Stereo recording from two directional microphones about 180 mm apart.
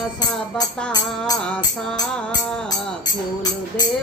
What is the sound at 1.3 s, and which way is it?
Music, 5° left (ahead or behind).